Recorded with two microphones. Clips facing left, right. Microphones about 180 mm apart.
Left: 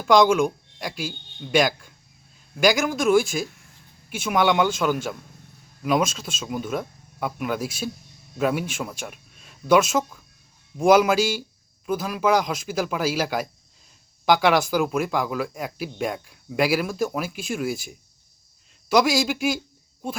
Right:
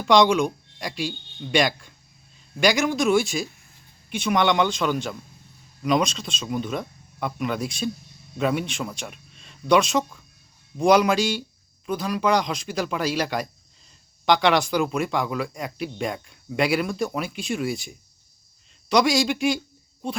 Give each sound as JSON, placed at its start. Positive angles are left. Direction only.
{"t": 0.0, "sound": "speech", "side_deg": 0}